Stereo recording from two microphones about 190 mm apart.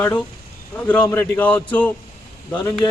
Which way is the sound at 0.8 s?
5° left (ahead or behind).